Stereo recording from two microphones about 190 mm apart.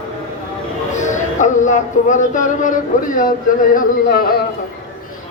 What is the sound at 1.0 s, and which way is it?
Music, 40° left (ahead or behind).